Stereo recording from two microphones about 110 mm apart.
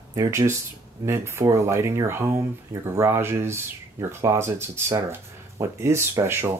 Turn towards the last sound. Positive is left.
turn(degrees=-25)  # may be behind; listen again after turning